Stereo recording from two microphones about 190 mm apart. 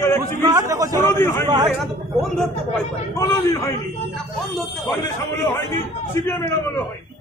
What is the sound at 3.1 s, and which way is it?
Speech, 15° left (ahead or behind).